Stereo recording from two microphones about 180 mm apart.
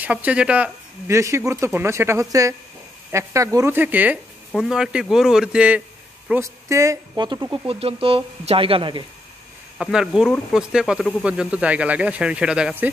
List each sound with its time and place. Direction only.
0.0 s speech: 10° right (ahead or behind)
6.4 s speech: 15° right (ahead or behind)
9.8 s speech: 5° right (ahead or behind)